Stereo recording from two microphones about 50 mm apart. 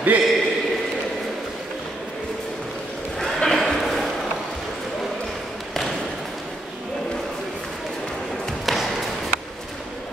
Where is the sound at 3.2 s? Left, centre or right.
Centre.